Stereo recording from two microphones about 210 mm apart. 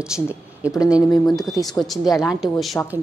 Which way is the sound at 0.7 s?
5° right (ahead or behind).